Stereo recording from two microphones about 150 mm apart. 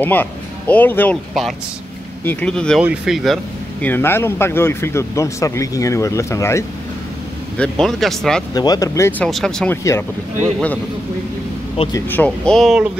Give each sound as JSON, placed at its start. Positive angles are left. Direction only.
{"t": 0.0, "sound": "a man's voice", "side_deg": 10}
{"t": 2.2, "sound": "speech", "side_deg": 5}
{"t": 2.8, "sound": "speech", "side_deg": -5}
{"t": 3.8, "sound": "speech", "side_deg": 15}
{"t": 7.5, "sound": "speech", "side_deg": 5}
{"t": 8.5, "sound": "speech", "side_deg": 25}
{"t": 9.2, "sound": "speech", "side_deg": 5}
{"t": 12.1, "sound": "speech", "side_deg": 10}